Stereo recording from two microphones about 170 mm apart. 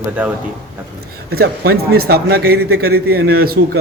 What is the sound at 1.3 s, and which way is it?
Speech, 65° right (ahead or behind).